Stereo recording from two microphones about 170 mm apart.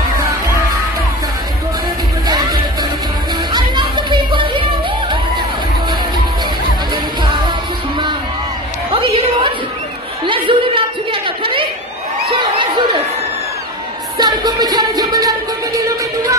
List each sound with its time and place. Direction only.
2.2 s music: 25° right (ahead or behind)
3.9 s music: 30° right (ahead or behind)
8.9 s a sound: 30° right (ahead or behind)
14.1 s music: 25° right (ahead or behind)